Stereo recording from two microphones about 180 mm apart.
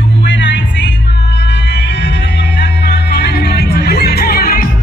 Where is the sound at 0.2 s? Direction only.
80° left.